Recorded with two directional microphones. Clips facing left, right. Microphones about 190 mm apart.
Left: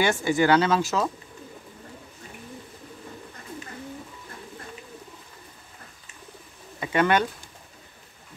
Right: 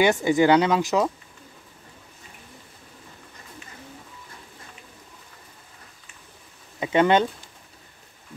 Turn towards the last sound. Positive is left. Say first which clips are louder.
# right 3 dB
turn(degrees=-20)  # may be behind; listen again after turning